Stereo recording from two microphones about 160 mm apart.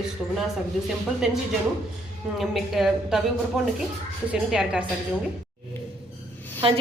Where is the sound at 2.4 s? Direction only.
Centre (ahead or behind).